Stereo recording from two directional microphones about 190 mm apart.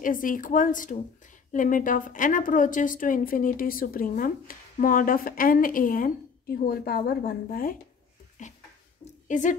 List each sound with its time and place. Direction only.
0.0 s a woman's voice: 45° left (ahead or behind)
8.4 s a sound: 40° left (ahead or behind)
9.3 s a woman's voice: 40° left (ahead or behind)